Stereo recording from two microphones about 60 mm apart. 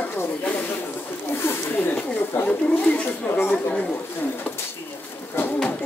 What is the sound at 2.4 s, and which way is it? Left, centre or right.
Speech, left.